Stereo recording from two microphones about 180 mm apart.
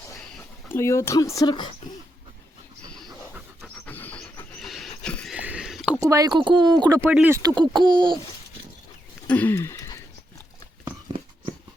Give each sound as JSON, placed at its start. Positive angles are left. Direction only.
{"t": 0.3, "sound": "speech", "side_deg": 15}
{"t": 3.8, "sound": "pant", "side_deg": 10}
{"t": 5.3, "sound": "a sound", "side_deg": -5}
{"t": 6.0, "sound": "speech", "side_deg": -20}
{"t": 7.1, "sound": "speech", "side_deg": -5}
{"t": 7.3, "sound": "speech", "side_deg": -20}
{"t": 9.2, "sound": "a sound", "side_deg": 10}